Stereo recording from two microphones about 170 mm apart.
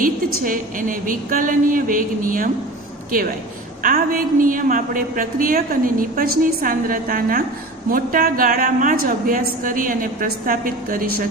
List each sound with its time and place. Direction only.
0.0 s a woman's voice: 55° right (ahead or behind)
3.8 s a woman's voice: 55° right (ahead or behind)